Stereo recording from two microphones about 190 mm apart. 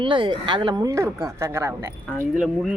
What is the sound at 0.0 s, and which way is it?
Speech, 25° right (ahead or behind).